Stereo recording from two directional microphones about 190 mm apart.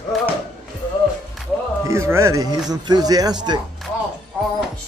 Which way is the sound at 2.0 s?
15° right (ahead or behind).